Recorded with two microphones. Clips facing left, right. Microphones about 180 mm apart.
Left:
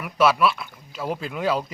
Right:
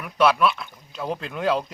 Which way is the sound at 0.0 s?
Centre (ahead or behind).